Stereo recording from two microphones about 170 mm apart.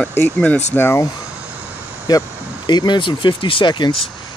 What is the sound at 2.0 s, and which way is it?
Speech, 25° left (ahead or behind).